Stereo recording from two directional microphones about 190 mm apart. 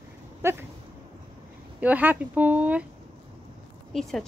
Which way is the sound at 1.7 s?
10° right (ahead or behind).